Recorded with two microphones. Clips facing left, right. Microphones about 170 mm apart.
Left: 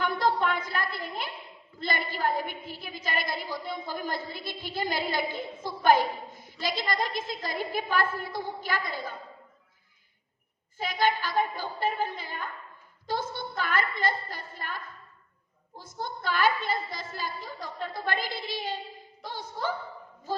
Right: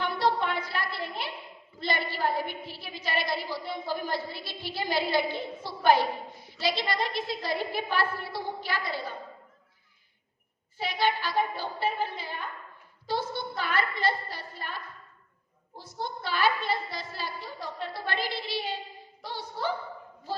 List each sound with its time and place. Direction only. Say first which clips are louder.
0.0 s a sound: left 1 dB; 45° left (ahead or behind)
1.8 s a woman's voice: even; 45° left (ahead or behind)
10.8 s a woman's voice: left 1 dB; 45° left (ahead or behind)
15.8 s a woman's voice: even; 45° left (ahead or behind)